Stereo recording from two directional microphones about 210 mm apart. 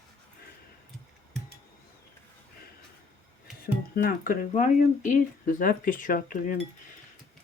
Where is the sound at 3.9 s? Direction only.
45° left (ahead or behind).